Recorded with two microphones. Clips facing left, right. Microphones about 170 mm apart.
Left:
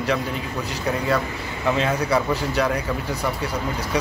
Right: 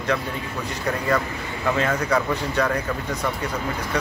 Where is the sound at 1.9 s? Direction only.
10° left (ahead or behind).